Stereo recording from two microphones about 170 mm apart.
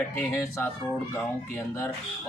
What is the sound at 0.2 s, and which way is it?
Speech, 15° left (ahead or behind).